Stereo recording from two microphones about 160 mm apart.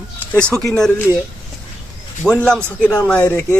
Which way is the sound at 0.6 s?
5° left (ahead or behind).